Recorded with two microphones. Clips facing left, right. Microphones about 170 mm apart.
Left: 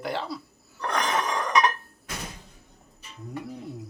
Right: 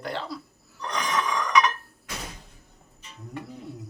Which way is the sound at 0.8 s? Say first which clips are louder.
Left 4 dB; 55° left (ahead or behind).